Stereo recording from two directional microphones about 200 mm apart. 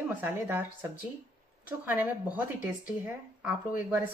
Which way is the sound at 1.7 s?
10° right (ahead or behind).